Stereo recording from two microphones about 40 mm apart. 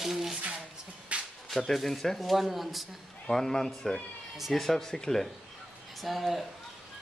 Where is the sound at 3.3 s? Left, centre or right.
Centre.